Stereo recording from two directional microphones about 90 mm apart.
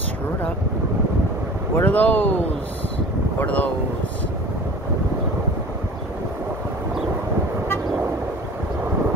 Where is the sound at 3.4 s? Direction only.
15° left (ahead or behind).